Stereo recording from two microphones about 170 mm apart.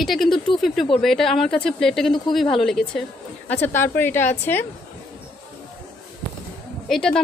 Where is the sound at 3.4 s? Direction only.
10° left (ahead or behind).